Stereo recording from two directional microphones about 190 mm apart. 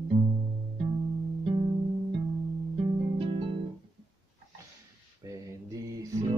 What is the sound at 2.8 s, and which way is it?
Music, 30° right (ahead or behind).